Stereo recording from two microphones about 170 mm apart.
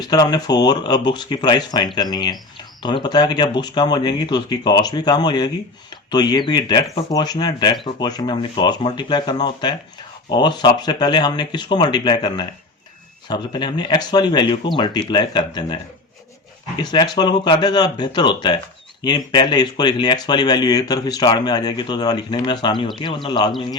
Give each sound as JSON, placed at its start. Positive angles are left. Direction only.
{"t": 0.0, "sound": "speech", "side_deg": 25}